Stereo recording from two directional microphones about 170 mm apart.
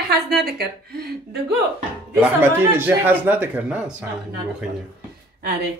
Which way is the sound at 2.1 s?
10° right (ahead or behind).